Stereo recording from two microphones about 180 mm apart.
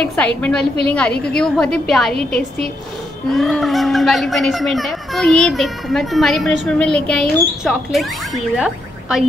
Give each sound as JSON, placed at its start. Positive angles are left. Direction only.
{"t": 0.0, "sound": "a woman's voice", "side_deg": 10}
{"t": 3.3, "sound": "a child's voice", "side_deg": 0}